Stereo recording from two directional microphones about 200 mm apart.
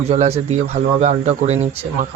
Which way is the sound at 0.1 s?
35° right (ahead or behind).